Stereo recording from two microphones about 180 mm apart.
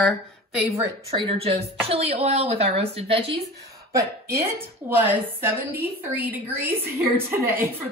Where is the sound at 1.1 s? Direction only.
35° right (ahead or behind).